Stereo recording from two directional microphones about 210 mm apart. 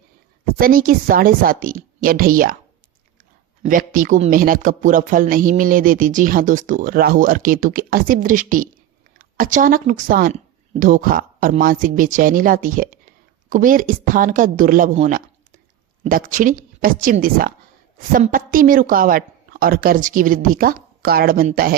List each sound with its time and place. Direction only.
0.6 s speech: 40° right (ahead or behind)
3.6 s speech: 40° right (ahead or behind)